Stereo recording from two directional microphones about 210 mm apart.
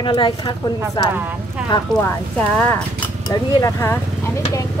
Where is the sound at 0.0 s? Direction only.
20° left (ahead or behind).